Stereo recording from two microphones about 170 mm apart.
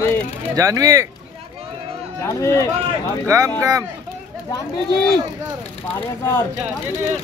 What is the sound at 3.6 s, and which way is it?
Speech, 20° right (ahead or behind).